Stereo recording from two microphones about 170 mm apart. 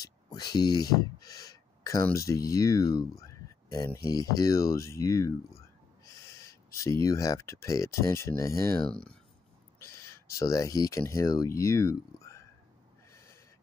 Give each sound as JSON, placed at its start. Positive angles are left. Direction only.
{"t": 0.0, "sound": "a sound", "side_deg": 25}
{"t": 2.1, "sound": "speech", "side_deg": 20}
{"t": 8.8, "sound": "speech", "side_deg": 5}
{"t": 9.8, "sound": "speech", "side_deg": 20}
{"t": 13.1, "sound": "owl", "side_deg": 15}